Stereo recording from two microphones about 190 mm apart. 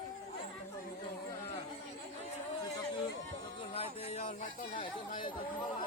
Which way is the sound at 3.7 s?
35° left (ahead or behind).